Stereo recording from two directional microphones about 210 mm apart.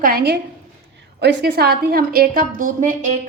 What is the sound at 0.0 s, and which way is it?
A woman's voice, 45° right (ahead or behind).